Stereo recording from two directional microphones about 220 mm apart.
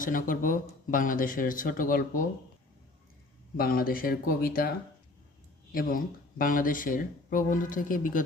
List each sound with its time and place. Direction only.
0.0 s speech: 40° left (ahead or behind)
3.6 s speech: 40° left (ahead or behind)
6.4 s speech: 40° left (ahead or behind)